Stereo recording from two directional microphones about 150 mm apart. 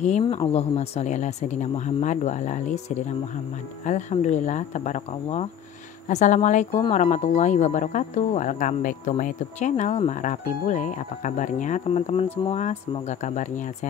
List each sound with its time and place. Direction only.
0.2 s speech: 30° left (ahead or behind)
0.5 s speech: 45° left (ahead or behind)